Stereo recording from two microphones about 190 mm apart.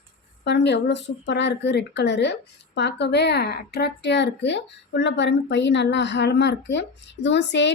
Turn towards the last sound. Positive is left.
turn(degrees=65)  # may be behind; listen again after turning